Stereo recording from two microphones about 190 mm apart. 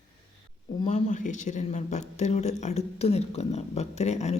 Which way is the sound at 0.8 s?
35° left (ahead or behind).